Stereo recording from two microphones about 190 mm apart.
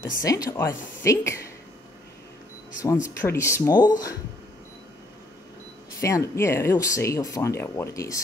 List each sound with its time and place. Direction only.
0.0 s speech: 20° left (ahead or behind)
3.2 s speech: 15° left (ahead or behind)
5.9 s speech: 15° left (ahead or behind)